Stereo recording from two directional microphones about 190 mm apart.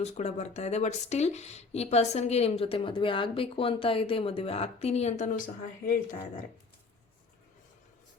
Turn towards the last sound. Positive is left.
turn(degrees=45)  # may be behind; listen again after turning